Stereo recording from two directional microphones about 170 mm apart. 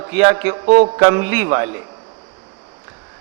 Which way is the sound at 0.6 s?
40° right (ahead or behind).